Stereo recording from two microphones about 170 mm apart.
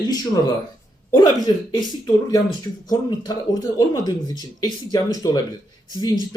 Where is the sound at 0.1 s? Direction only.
25° left (ahead or behind).